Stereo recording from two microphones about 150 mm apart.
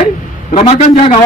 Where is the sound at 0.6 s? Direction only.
45° left (ahead or behind).